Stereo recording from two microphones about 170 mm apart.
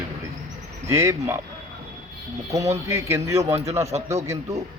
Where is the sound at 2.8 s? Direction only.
15° right (ahead or behind).